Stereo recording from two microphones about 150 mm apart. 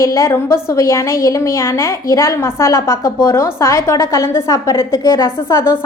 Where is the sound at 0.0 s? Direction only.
20° left (ahead or behind).